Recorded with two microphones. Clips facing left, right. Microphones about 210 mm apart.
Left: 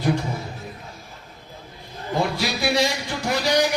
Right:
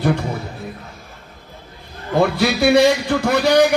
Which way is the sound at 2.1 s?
60° right (ahead or behind).